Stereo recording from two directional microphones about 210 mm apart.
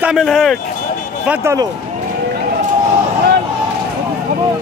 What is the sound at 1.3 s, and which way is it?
Speech, 10° right (ahead or behind).